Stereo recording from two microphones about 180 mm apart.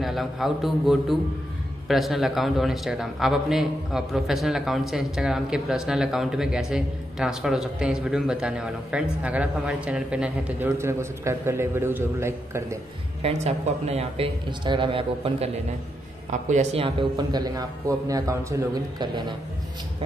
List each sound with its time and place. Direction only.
0.0 s a man's voice: centre (ahead or behind)
13.2 s speech: 35° right (ahead or behind)
16.3 s a man's voice: 40° right (ahead or behind); by 19.3 s 25° right (ahead or behind)